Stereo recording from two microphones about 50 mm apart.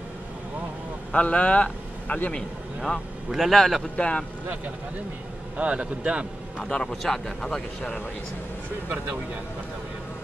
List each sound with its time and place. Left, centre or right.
1.1 s speech: left
3.3 s a man's voice: centre
3.9 s speech: left
5.6 s a man's voice: right
6.7 s speech: centre
8.8 s speech: right